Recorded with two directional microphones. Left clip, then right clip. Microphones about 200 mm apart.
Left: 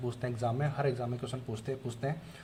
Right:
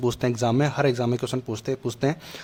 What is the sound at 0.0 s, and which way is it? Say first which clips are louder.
Speech: right 11 dB; 40° right (ahead or behind).